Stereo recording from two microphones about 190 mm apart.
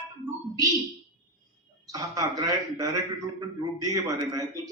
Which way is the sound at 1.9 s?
20° right (ahead or behind).